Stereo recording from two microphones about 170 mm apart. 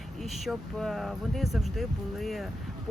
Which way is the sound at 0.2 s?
Centre (ahead or behind).